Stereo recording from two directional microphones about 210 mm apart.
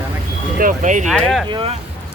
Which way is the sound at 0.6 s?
35° right (ahead or behind).